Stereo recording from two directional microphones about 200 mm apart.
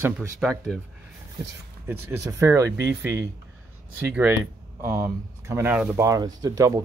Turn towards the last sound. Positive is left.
turn(degrees=-15)  # may be behind; listen again after turning